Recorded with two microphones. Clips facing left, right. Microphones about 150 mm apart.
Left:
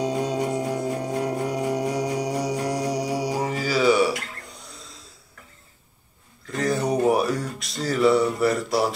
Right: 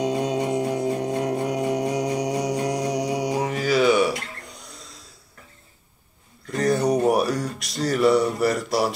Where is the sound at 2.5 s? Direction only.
15° right (ahead or behind).